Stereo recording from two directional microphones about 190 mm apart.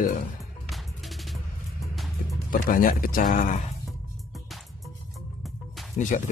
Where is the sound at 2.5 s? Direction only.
45° left (ahead or behind).